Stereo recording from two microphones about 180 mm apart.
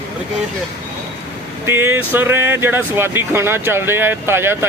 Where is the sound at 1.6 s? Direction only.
15° right (ahead or behind).